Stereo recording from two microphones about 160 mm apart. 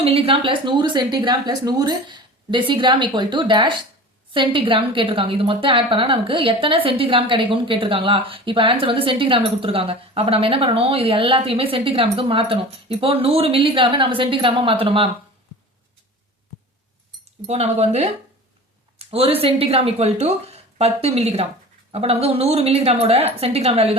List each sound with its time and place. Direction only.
0.0 s a woman's voice: 35° right (ahead or behind)
17.4 s a woman's voice: 40° right (ahead or behind)